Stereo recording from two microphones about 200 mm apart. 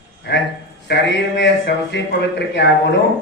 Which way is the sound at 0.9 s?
60° left (ahead or behind).